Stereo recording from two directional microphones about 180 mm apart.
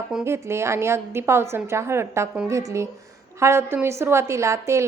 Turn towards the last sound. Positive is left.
turn(degrees=-15)  # may be behind; listen again after turning